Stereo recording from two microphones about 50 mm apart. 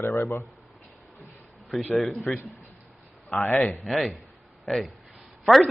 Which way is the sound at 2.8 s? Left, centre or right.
Centre.